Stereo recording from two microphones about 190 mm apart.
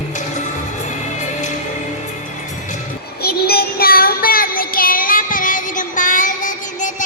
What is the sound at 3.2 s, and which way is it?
Child singing, 55° left (ahead or behind).